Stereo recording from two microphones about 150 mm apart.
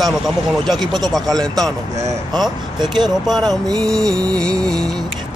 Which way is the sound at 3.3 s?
Centre (ahead or behind).